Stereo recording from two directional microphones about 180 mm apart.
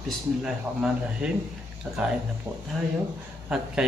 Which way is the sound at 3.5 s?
5° right (ahead or behind).